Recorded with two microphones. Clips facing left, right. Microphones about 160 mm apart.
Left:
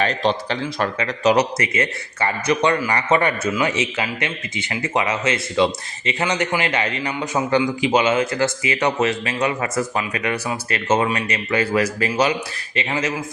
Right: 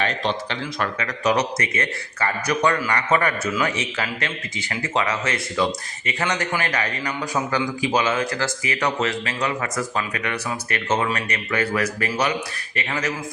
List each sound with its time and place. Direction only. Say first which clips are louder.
0.0 s a man's voice: left 4 dB; 35° left (ahead or behind)